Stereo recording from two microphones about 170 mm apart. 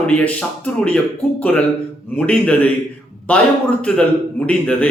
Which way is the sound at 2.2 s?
10° left (ahead or behind).